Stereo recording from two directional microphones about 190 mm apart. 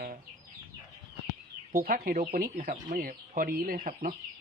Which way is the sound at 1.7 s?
50° right (ahead or behind).